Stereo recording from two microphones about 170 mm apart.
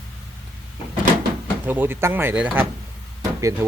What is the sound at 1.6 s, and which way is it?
Speech, 10° right (ahead or behind).